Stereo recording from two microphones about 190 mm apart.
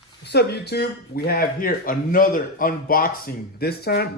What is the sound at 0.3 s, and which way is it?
Speech, 60° left (ahead or behind).